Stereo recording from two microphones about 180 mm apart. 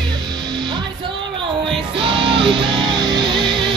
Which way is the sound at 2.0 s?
30° right (ahead or behind).